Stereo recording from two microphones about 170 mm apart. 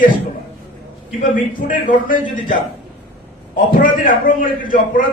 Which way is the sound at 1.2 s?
50° left (ahead or behind).